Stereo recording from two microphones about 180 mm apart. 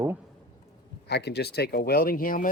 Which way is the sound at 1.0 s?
65° left (ahead or behind).